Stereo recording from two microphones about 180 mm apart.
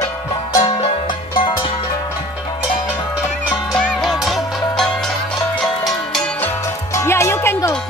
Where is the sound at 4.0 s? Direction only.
Centre (ahead or behind).